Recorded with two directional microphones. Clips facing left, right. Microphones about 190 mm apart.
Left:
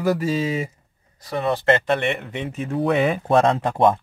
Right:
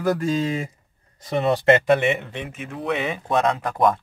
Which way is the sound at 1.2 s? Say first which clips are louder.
Right 2 dB; 20° right (ahead or behind).